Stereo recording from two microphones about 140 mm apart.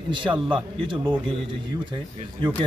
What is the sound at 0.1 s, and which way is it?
Speech, 35° right (ahead or behind).